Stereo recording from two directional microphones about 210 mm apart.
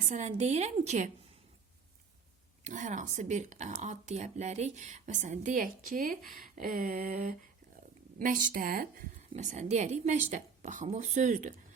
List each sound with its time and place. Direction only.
0.0 s speech: 35° right (ahead or behind)
2.6 s speech: 35° right (ahead or behind)
6.3 s a sound: 40° right (ahead or behind)
8.2 s speech: 40° right (ahead or behind)